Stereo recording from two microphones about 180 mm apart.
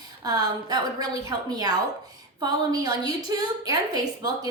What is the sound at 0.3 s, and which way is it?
A woman's voice, 20° right (ahead or behind).